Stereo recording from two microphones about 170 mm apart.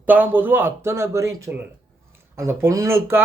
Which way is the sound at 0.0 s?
10° right (ahead or behind).